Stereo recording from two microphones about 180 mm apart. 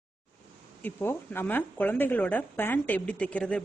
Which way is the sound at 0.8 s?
10° left (ahead or behind).